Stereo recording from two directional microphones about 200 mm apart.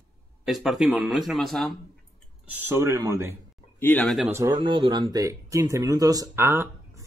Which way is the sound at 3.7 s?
10° left (ahead or behind).